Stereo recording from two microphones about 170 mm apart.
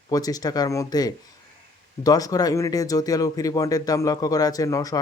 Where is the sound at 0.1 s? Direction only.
20° left (ahead or behind).